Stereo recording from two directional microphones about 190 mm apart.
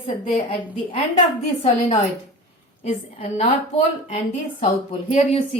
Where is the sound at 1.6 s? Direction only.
35° left (ahead or behind).